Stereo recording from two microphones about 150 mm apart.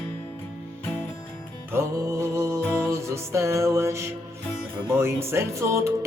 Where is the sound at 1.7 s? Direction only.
20° right (ahead or behind).